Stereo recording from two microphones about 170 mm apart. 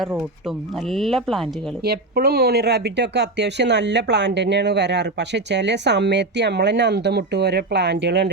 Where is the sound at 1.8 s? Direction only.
65° right (ahead or behind).